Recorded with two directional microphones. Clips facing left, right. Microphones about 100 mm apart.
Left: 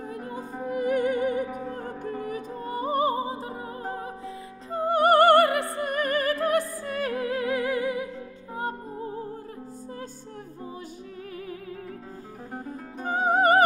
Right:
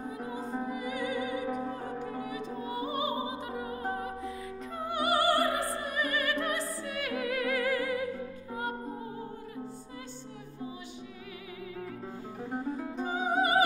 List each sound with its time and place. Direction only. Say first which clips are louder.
0.7 s music: left 9 dB; 50° left (ahead or behind); by 4.1 s 30° left (ahead or behind)
4.7 s music: left 10 dB; 45° left (ahead or behind); by 8.1 s 20° left (ahead or behind)
12.5 s music: right 3 dB; 50° left (ahead or behind)